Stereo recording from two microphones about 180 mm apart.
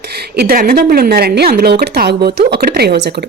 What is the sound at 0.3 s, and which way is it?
A woman's voice, 55° right (ahead or behind).